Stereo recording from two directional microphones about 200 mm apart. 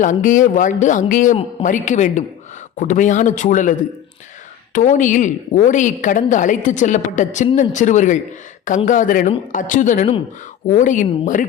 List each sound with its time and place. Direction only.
0.0 s a woman's voice: 40° left (ahead or behind)